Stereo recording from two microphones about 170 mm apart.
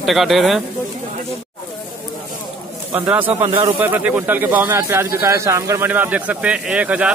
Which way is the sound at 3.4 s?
30° right (ahead or behind).